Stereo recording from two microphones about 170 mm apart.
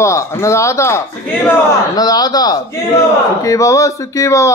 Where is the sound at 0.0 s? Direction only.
15° left (ahead or behind).